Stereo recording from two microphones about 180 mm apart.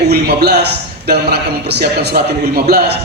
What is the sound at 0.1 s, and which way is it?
A man's voice, 65° right (ahead or behind).